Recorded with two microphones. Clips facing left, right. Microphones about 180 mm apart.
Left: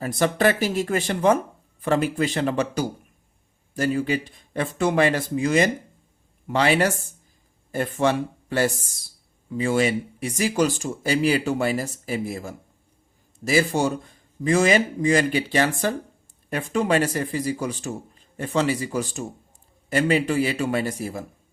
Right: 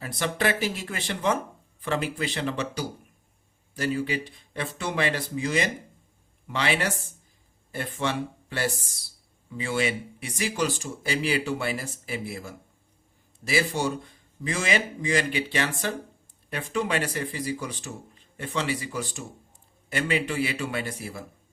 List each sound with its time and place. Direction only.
0.0 s a man's voice: 45° left (ahead or behind)